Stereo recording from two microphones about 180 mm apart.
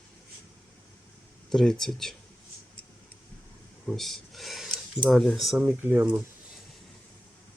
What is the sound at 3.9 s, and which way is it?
Speech, centre (ahead or behind).